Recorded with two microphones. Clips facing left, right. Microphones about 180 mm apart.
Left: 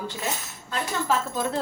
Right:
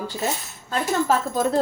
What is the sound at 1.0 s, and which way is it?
Speech, 40° right (ahead or behind).